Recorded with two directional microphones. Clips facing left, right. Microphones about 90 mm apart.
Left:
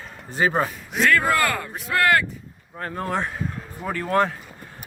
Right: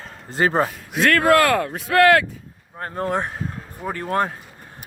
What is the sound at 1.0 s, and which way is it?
Speech, 90° right.